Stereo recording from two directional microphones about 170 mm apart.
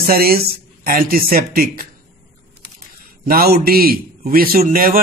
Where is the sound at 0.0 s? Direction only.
60° right (ahead or behind).